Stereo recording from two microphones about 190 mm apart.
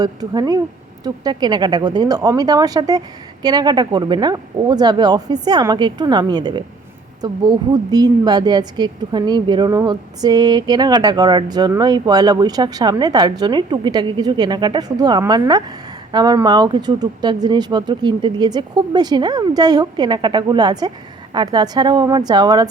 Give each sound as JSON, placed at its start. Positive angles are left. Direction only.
{"t": 0.0, "sound": "a woman's voice", "side_deg": -20}